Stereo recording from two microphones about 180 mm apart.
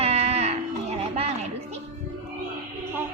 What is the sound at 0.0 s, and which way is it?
Music, 35° right (ahead or behind).